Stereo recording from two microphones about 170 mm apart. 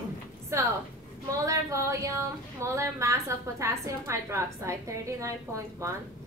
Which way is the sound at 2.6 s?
15° right (ahead or behind).